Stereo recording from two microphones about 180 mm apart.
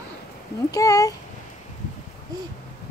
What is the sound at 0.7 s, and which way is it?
Speech, 20° left (ahead or behind).